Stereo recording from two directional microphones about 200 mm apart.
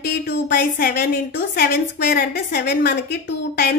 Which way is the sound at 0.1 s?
55° left (ahead or behind).